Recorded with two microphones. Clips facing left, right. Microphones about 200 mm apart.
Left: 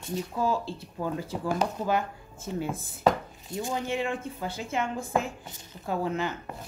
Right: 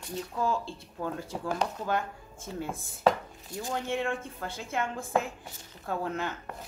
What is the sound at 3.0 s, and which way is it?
Chopping, 20° left (ahead or behind).